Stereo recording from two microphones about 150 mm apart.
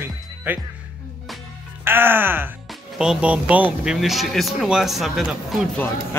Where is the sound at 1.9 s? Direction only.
15° right (ahead or behind).